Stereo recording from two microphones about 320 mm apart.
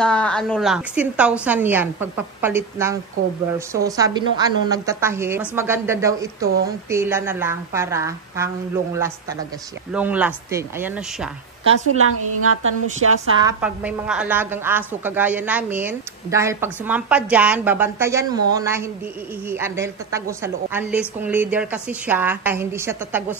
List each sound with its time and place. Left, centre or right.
0.0 s a woman's voice: centre
11.9 s a woman's voice: right
13.4 s a woman's voice: centre